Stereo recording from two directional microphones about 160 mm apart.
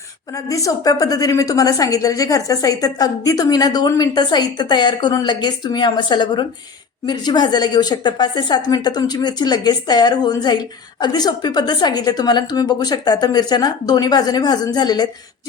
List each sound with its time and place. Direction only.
0.3 s speech: 20° left (ahead or behind)